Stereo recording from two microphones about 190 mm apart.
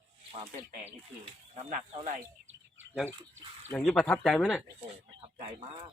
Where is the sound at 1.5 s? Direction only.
40° right (ahead or behind).